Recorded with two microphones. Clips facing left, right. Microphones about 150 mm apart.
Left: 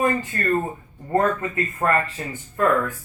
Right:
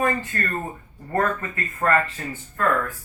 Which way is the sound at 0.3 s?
20° left (ahead or behind).